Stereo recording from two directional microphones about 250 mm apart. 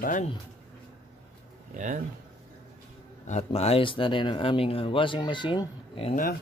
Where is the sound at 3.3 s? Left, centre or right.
Left.